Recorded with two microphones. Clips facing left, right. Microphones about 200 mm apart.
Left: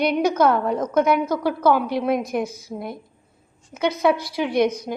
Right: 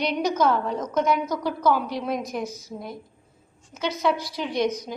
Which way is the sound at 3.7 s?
60° left (ahead or behind).